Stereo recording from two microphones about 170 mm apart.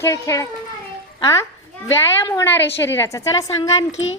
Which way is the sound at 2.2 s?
15° left (ahead or behind).